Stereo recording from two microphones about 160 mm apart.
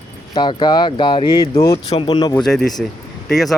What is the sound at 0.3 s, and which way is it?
Speech, 30° left (ahead or behind).